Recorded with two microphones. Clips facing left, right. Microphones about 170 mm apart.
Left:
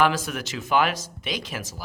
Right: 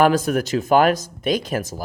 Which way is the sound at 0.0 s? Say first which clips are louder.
Right 6 dB; 45° right (ahead or behind).